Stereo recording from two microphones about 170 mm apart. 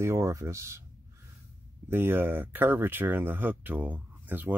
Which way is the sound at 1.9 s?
10° right (ahead or behind).